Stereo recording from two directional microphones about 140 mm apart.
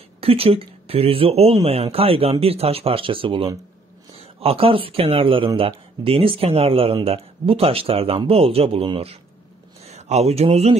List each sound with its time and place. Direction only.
0.2 s speech: 45° right (ahead or behind)
9.8 s speech: 55° right (ahead or behind)